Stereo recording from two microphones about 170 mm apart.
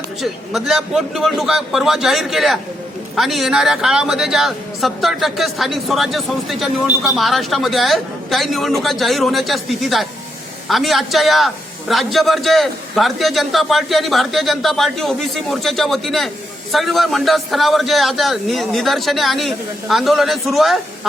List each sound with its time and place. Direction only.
0.2 s speech: centre (ahead or behind)